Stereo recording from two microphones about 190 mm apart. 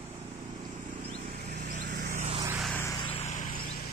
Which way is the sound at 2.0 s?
40° right (ahead or behind).